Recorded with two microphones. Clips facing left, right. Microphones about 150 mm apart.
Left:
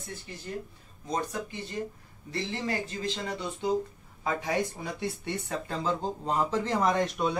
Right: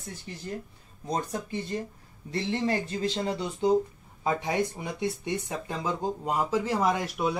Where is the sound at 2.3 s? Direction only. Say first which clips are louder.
Right 4 dB; 30° right (ahead or behind).